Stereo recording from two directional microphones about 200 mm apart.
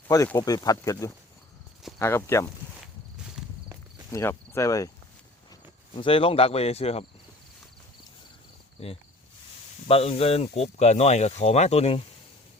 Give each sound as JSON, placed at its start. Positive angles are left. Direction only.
{"t": 0.1, "sound": "speech", "side_deg": 15}
{"t": 4.1, "sound": "speech", "side_deg": 15}
{"t": 6.0, "sound": "speech", "side_deg": 25}
{"t": 8.8, "sound": "speech", "side_deg": 30}